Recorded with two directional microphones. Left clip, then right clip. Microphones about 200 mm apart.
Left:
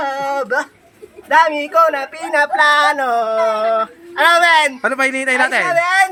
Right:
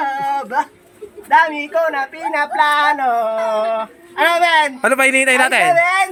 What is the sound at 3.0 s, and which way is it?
Speech, 20° left (ahead or behind).